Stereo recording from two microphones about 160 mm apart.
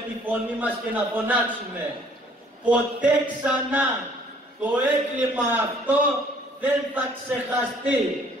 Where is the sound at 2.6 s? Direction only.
10° right (ahead or behind).